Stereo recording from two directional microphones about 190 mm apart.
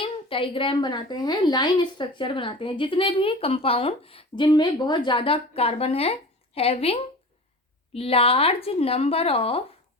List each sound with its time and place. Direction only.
0.0 s a woman's voice: 30° left (ahead or behind)